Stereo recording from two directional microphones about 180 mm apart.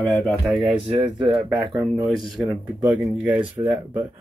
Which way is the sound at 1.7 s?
5° right (ahead or behind).